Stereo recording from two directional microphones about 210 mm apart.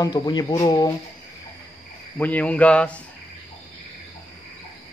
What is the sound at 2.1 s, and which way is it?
Speech, 5° left (ahead or behind).